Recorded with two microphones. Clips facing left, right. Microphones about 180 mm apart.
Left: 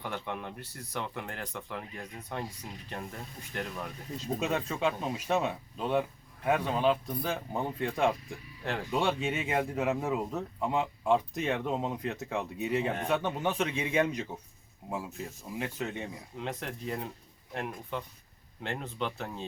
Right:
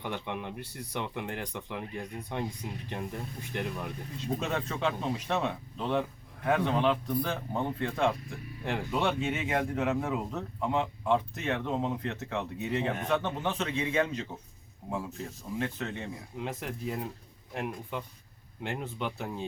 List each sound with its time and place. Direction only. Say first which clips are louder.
0.0 s speech: right 1 dB; 15° right (ahead or behind)
4.4 s speech: left 3 dB; 10° left (ahead or behind)
16.4 s speech: right 1 dB; 5° right (ahead or behind)